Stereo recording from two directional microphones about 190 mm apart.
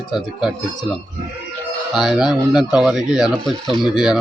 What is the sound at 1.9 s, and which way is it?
Speech, centre (ahead or behind).